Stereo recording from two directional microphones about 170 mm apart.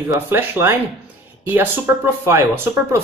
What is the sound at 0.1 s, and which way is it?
Speech, 15° right (ahead or behind).